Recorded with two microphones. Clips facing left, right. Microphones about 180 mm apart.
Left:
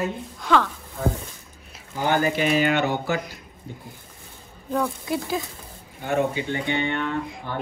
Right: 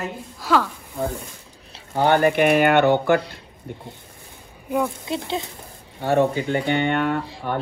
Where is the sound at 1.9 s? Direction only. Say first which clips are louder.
Right 5 dB; 60° right (ahead or behind).